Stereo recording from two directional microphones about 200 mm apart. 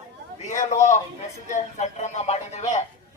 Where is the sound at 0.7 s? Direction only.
35° left (ahead or behind).